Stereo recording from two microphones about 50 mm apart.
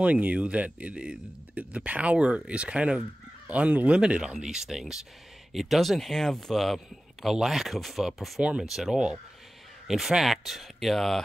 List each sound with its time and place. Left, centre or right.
0.0 s speech: right; by 8.4 s centre
8.4 s speech: centre
8.6 s speech: centre